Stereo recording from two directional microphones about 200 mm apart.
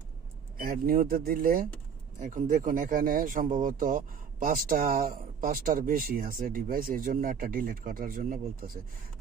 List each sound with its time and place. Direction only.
0.6 s speech: 45° right (ahead or behind)